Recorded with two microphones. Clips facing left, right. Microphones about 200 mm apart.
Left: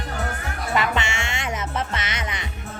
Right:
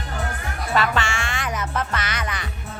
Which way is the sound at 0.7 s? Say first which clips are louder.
Right 1 dB; 20° left (ahead or behind).